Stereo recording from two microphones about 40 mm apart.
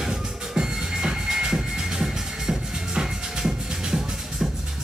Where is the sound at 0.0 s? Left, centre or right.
Centre.